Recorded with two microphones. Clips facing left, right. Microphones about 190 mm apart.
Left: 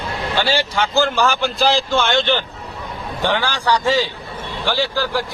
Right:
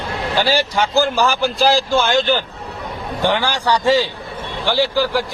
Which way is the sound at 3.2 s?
15° right (ahead or behind).